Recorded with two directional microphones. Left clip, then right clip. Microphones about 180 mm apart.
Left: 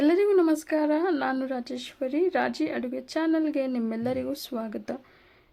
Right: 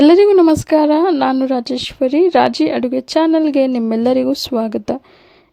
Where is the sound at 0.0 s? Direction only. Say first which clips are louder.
Right 13 dB; 45° right (ahead or behind).